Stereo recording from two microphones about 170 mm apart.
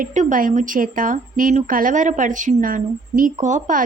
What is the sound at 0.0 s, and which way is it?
Speech, 45° right (ahead or behind).